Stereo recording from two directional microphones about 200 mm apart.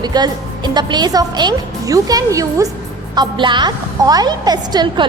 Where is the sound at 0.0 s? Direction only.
20° right (ahead or behind).